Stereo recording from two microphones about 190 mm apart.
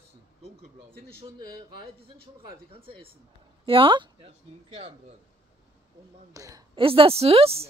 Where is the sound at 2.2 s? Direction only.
30° right (ahead or behind).